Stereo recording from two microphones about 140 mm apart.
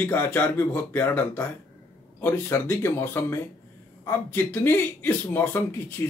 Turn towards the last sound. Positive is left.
turn(degrees=15)  # may be behind; listen again after turning